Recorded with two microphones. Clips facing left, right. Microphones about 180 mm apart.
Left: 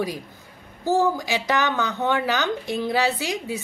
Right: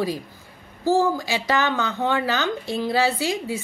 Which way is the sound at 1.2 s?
15° left (ahead or behind).